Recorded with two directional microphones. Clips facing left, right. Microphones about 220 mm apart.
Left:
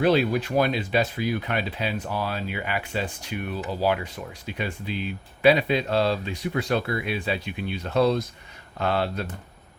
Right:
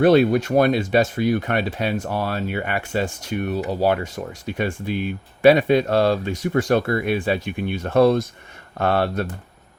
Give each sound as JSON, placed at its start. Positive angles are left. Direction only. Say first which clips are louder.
{"t": 0.0, "sound": "speech", "louder": "right 6 dB", "side_deg": -50}